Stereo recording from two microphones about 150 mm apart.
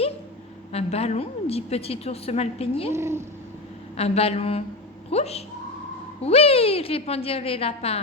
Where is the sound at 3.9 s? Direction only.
40° left (ahead or behind).